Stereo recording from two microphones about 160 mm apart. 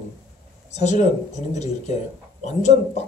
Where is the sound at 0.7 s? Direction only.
45° left (ahead or behind).